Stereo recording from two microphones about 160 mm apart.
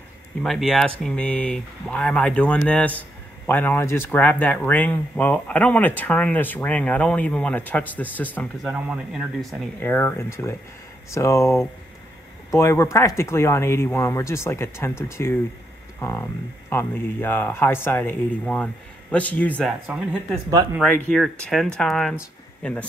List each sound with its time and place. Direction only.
0.4 s speech: centre (ahead or behind)
8.6 s speech: 10° right (ahead or behind)
9.8 s speech: 10° left (ahead or behind)
19.9 s speech: 10° right (ahead or behind)
20.8 s speech: 5° left (ahead or behind)